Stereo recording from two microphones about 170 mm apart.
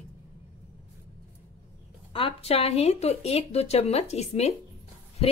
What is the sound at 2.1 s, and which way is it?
A woman's voice, 35° left (ahead or behind).